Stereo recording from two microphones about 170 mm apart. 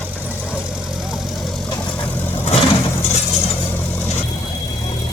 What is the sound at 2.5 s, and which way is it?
Vehicle, 40° left (ahead or behind).